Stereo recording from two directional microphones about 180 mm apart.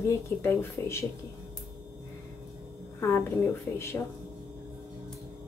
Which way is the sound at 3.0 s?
15° left (ahead or behind).